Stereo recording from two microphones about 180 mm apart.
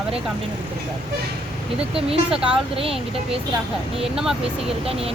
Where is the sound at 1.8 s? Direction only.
30° right (ahead or behind).